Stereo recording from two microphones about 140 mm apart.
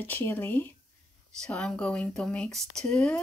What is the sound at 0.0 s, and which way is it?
Speech, 15° left (ahead or behind).